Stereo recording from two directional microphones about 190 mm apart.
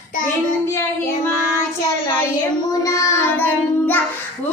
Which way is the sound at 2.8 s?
15° left (ahead or behind).